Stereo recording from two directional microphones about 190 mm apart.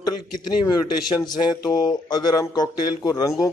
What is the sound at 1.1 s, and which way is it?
Speech, 5° right (ahead or behind).